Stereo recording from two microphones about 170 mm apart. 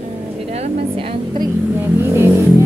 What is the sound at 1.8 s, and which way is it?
Vehicle, 15° right (ahead or behind).